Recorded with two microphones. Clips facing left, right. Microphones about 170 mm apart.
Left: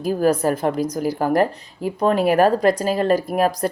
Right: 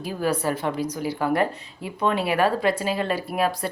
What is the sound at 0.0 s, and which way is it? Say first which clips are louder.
A woman's voice: left 7 dB; 45° left (ahead or behind).